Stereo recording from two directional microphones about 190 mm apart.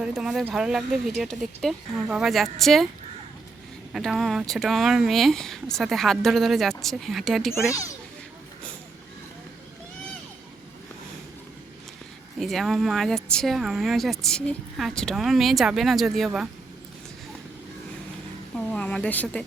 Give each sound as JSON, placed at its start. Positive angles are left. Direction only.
{"t": 0.0, "sound": "speech", "side_deg": -5}
{"t": 3.9, "sound": "speech", "side_deg": 0}
{"t": 7.7, "sound": "speech", "side_deg": 15}
{"t": 12.4, "sound": "speech", "side_deg": 0}
{"t": 18.5, "sound": "speech", "side_deg": 5}